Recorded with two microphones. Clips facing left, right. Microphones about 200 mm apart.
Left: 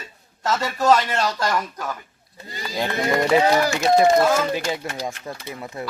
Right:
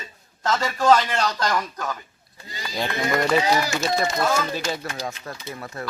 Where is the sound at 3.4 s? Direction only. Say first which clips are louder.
Left 4 dB; 55° left (ahead or behind).